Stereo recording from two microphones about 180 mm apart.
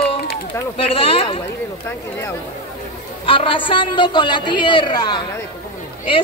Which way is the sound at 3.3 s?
30° left (ahead or behind).